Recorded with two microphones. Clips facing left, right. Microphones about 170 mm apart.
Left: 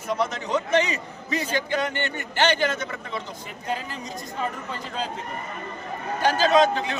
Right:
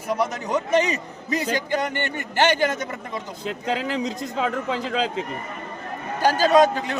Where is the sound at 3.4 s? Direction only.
90° right.